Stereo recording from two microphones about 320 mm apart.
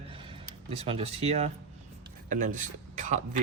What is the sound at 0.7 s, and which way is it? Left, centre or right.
Speech, centre.